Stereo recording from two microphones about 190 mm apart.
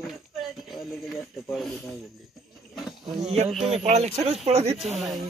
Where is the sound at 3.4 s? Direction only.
Centre (ahead or behind).